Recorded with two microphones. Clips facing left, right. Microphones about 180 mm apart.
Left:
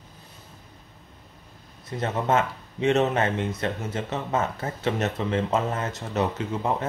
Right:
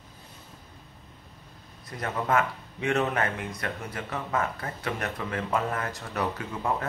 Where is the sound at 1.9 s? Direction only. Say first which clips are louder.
Left 4 dB; 25° left (ahead or behind).